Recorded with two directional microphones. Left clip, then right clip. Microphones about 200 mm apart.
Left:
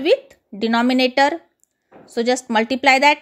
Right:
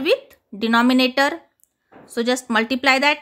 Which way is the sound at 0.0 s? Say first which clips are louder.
Left 2 dB; 10° left (ahead or behind).